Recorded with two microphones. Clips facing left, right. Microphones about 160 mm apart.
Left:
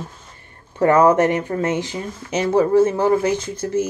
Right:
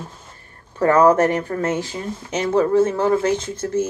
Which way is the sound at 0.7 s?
20° left (ahead or behind).